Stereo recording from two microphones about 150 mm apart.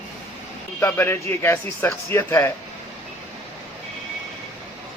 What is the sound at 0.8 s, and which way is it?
Speech, 15° left (ahead or behind).